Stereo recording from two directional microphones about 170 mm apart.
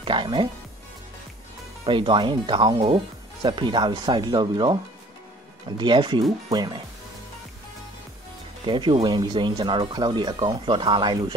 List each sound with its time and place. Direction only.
0.0 s speech: 30° right (ahead or behind)
1.9 s speech: 30° right (ahead or behind)
5.8 s speech: 25° right (ahead or behind)
8.6 s speech: 30° right (ahead or behind)